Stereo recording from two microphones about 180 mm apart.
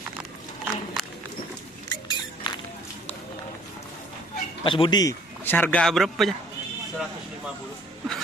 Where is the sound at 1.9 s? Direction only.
25° left (ahead or behind).